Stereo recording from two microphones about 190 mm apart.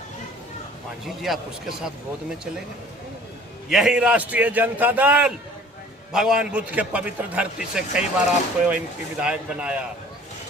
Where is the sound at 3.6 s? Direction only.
5° right (ahead or behind).